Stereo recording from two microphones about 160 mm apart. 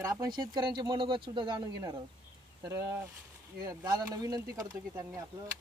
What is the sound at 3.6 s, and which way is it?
Speech, 20° right (ahead or behind).